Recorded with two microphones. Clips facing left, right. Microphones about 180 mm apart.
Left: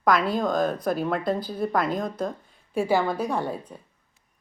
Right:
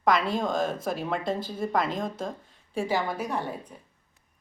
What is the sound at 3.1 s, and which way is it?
Speech, 30° left (ahead or behind).